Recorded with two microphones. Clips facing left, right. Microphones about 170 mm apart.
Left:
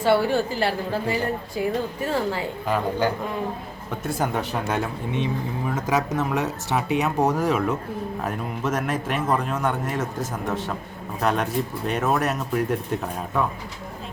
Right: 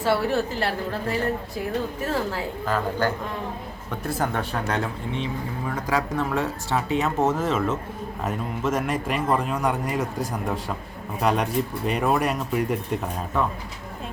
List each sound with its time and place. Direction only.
0.0 s a woman's voice: centre (ahead or behind)
2.6 s speech: 10° left (ahead or behind)
4.2 s speech: 10° left (ahead or behind)
8.9 s a woman's voice: 5° left (ahead or behind)
9.2 s a man's voice: 10° right (ahead or behind)
11.2 s a woman's voice: centre (ahead or behind)